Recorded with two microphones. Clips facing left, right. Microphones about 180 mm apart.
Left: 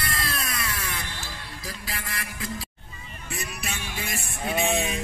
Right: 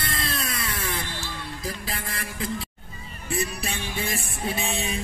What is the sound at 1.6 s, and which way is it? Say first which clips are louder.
Music: right 3 dB; 25° right (ahead or behind).